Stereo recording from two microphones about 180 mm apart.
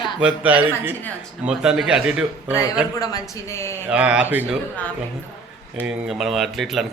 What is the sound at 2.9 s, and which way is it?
Speech, 20° left (ahead or behind).